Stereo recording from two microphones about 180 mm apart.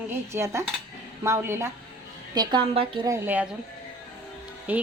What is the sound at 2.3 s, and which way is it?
Speech, 25° right (ahead or behind).